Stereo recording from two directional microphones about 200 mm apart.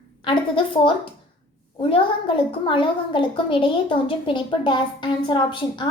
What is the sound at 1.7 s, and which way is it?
A woman's voice, 25° left (ahead or behind).